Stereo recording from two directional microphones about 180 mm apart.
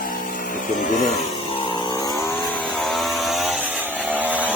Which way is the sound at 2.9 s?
Centre (ahead or behind).